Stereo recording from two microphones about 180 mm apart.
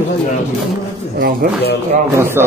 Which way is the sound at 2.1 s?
15° right (ahead or behind).